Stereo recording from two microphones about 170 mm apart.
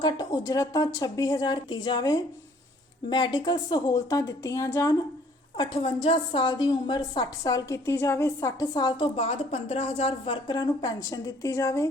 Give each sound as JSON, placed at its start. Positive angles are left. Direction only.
{"t": 0.0, "sound": "a woman's voice", "side_deg": 25}
{"t": 9.1, "sound": "a woman's voice", "side_deg": 40}